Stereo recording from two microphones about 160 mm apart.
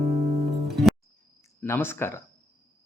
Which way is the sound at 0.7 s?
Centre (ahead or behind).